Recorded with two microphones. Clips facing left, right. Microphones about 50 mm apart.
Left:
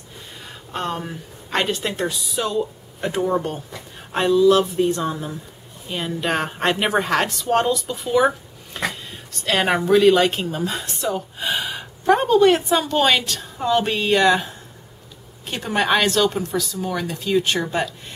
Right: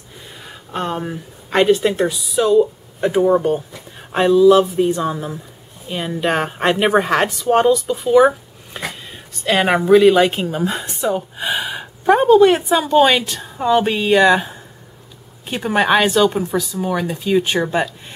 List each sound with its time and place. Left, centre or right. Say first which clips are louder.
0.4 s a woman's voice: right 3 dB; centre